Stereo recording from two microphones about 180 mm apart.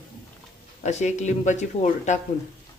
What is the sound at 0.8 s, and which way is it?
Speech, 40° left (ahead or behind).